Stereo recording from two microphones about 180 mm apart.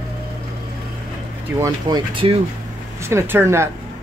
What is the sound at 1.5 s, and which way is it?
Speech, 20° right (ahead or behind).